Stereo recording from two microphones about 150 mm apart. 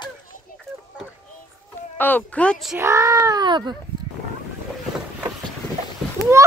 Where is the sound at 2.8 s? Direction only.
20° right (ahead or behind).